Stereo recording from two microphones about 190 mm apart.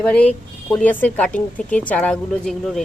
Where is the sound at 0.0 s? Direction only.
5° left (ahead or behind).